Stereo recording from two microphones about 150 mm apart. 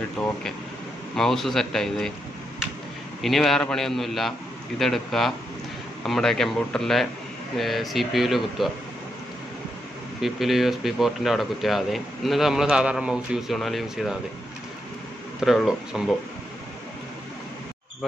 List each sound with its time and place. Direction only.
0.2 s a man's voice: 5° left (ahead or behind)
3.2 s a man's voice: centre (ahead or behind)
10.2 s a man's voice: centre (ahead or behind)
15.4 s a man's voice: 5° right (ahead or behind)